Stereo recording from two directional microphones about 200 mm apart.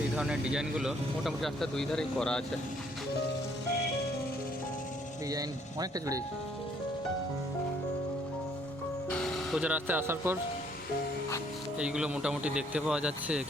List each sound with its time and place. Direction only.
0.2 s speech: 5° right (ahead or behind)
5.3 s speech: 20° right (ahead or behind)
9.0 s speech: 5° left (ahead or behind)
11.8 s speech: 5° right (ahead or behind)